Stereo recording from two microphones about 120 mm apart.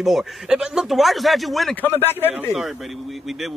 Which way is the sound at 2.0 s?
20° left (ahead or behind).